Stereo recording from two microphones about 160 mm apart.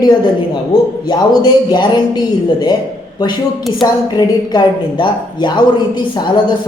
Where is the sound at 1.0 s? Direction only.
25° left (ahead or behind).